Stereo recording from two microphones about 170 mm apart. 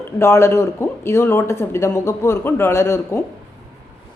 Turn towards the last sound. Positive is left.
turn(degrees=15)  # may be behind; listen again after turning